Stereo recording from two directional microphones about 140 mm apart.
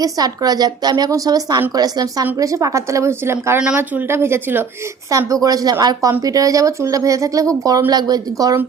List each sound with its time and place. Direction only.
0.0 s a woman's voice: 25° right (ahead or behind)